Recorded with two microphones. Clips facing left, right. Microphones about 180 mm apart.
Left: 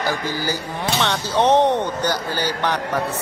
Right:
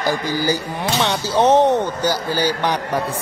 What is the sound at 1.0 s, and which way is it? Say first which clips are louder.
A man's voice: right 2 dB; 10° right (ahead or behind).